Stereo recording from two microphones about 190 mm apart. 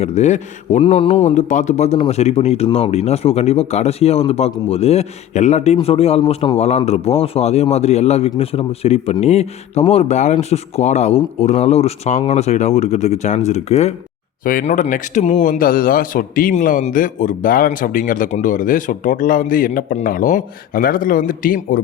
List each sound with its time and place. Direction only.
0.0 s a man's voice: 35° left (ahead or behind)